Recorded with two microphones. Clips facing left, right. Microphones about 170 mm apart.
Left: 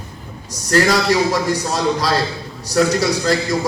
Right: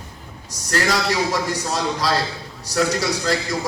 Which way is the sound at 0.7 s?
40° left (ahead or behind).